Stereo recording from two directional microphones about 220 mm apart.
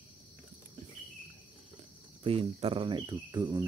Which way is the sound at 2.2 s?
25° right (ahead or behind).